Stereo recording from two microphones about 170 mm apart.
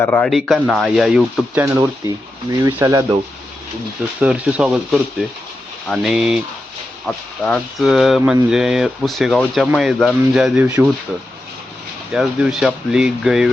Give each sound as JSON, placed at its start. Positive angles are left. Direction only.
{"t": 0.0, "sound": "speech", "side_deg": 5}
{"t": 4.2, "sound": "speech", "side_deg": -5}
{"t": 7.4, "sound": "speech", "side_deg": 0}
{"t": 12.1, "sound": "speech", "side_deg": -5}